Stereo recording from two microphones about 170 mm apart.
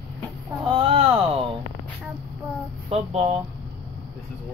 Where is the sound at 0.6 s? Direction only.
30° right (ahead or behind).